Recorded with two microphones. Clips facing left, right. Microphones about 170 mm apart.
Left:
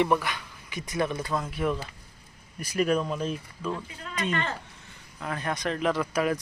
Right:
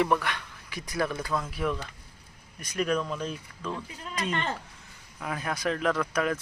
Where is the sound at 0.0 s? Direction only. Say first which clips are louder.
Left 1 dB; 5° left (ahead or behind).